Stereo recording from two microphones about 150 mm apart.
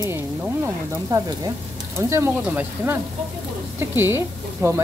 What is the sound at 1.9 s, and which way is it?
Speech, 15° right (ahead or behind).